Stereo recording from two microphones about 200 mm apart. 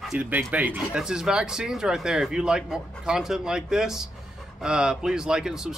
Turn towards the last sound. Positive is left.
turn(degrees=0)  # may be behind; listen again after turning